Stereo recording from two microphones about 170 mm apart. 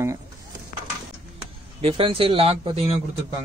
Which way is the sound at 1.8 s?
30° right (ahead or behind).